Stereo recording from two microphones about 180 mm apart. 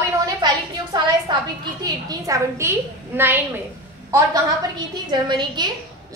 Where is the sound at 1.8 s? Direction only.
20° right (ahead or behind).